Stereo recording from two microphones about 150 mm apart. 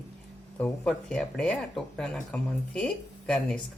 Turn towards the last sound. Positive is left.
turn(degrees=5)  # may be behind; listen again after turning